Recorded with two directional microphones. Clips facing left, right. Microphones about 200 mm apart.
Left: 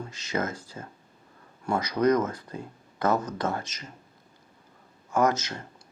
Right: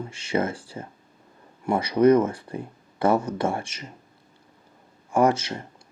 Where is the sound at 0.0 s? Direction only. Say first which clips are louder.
Right 5 dB; 30° right (ahead or behind).